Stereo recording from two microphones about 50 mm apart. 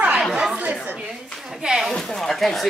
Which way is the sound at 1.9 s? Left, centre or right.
Centre.